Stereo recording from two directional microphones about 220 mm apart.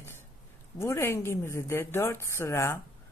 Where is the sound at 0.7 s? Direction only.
10° left (ahead or behind).